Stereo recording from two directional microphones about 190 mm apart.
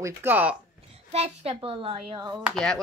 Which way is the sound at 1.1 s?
35° right (ahead or behind).